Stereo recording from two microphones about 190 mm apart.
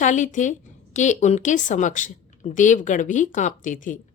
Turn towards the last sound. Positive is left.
turn(degrees=45)  # may be behind; listen again after turning